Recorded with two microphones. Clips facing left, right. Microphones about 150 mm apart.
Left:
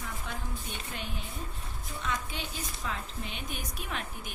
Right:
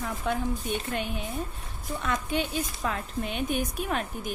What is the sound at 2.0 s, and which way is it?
A woman's voice, 55° right (ahead or behind).